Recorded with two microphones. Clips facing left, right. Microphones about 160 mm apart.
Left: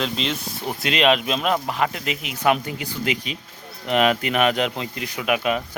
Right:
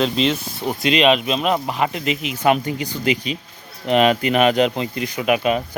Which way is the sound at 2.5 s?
Centre (ahead or behind).